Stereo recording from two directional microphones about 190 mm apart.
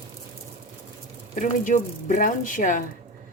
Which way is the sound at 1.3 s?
40° left (ahead or behind).